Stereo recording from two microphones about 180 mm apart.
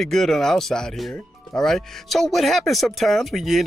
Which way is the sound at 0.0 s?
Centre (ahead or behind).